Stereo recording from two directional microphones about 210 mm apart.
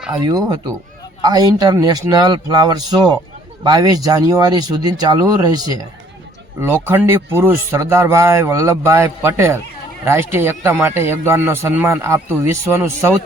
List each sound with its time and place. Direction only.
0.1 s speech: 15° right (ahead or behind)